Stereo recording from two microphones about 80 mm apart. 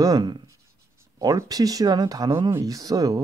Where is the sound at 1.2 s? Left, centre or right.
Right.